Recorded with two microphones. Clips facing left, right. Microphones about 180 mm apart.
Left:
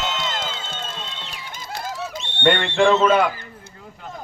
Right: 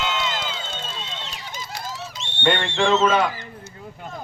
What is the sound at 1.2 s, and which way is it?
Bird, 55° left (ahead or behind).